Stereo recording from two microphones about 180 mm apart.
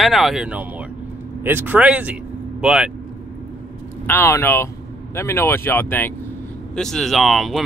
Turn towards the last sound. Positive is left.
turn(degrees=0)  # may be behind; listen again after turning